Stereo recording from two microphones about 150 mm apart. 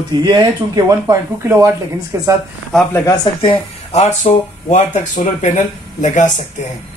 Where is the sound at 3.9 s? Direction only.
50° left (ahead or behind).